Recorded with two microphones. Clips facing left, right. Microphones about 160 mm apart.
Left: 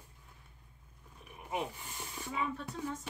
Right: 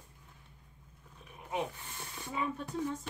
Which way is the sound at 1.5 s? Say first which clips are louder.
Right 1 dB; 10° left (ahead or behind).